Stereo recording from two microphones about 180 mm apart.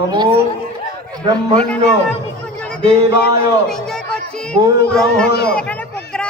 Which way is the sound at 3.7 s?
5° left (ahead or behind).